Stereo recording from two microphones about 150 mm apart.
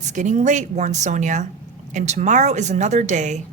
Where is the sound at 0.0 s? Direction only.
55° right (ahead or behind).